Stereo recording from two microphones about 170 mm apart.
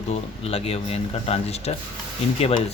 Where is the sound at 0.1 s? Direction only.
35° left (ahead or behind).